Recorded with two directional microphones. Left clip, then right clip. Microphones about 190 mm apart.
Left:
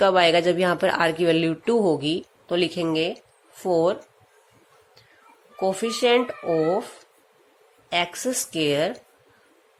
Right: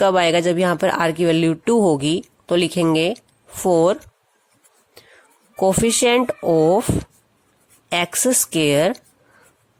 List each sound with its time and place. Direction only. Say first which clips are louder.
0.0 s speech: right 2 dB; 40° right (ahead or behind)
5.5 s speech: right 7 dB; 50° right (ahead or behind)
7.9 s speech: right 5 dB; 50° right (ahead or behind)